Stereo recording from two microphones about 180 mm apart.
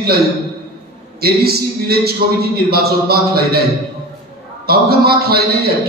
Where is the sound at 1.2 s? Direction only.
60° right (ahead or behind).